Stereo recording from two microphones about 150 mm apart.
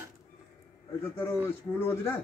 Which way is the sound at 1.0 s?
15° left (ahead or behind).